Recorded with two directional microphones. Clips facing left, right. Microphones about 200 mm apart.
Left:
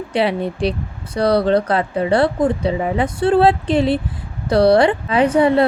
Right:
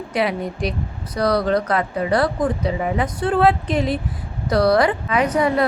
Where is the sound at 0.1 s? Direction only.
30° left (ahead or behind).